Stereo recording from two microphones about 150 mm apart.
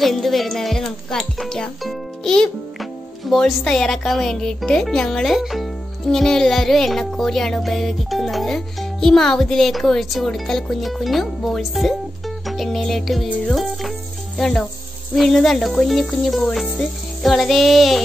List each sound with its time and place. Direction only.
0.0 s music: centre (ahead or behind)